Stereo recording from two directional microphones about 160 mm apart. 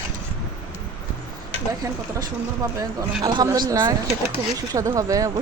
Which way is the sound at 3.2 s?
25° right (ahead or behind).